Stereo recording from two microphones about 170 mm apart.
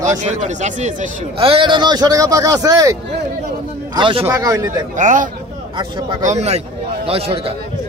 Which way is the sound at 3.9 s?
30° right (ahead or behind).